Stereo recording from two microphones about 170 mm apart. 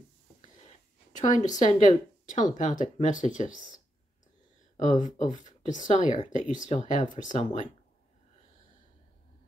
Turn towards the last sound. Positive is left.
turn(degrees=45)  # may be behind; listen again after turning